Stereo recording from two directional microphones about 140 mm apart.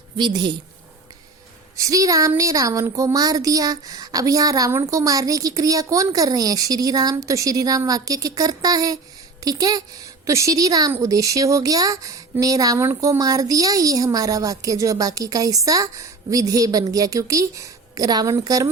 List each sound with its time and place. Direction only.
0.2 s a woman's voice: 35° right (ahead or behind)
1.7 s speech: 25° right (ahead or behind)